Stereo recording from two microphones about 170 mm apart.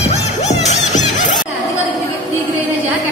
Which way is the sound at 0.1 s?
40° left (ahead or behind).